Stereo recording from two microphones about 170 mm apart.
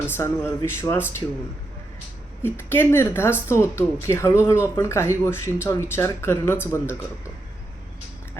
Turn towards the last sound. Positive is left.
turn(degrees=15)  # may be behind; listen again after turning